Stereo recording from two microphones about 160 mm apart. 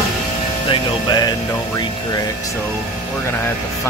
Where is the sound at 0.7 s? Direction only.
25° left (ahead or behind).